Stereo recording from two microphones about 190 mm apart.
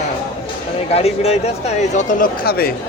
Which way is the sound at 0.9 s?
30° left (ahead or behind).